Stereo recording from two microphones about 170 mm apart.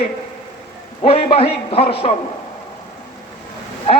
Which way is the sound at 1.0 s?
35° left (ahead or behind).